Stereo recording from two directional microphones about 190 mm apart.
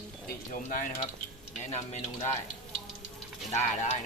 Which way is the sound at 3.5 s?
35° left (ahead or behind).